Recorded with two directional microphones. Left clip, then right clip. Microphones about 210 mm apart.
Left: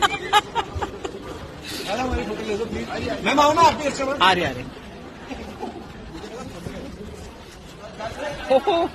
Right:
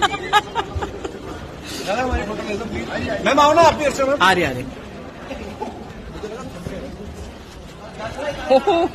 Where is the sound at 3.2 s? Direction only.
15° right (ahead or behind).